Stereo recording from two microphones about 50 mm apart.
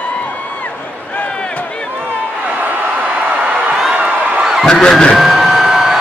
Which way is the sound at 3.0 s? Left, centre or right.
Right.